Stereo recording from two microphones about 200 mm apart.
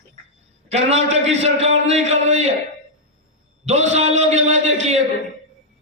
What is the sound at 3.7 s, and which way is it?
A man's voice, 35° right (ahead or behind).